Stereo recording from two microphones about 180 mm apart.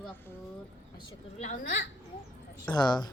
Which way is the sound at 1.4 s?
45° left (ahead or behind).